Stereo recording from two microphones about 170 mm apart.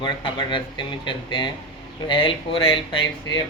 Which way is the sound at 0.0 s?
30° left (ahead or behind).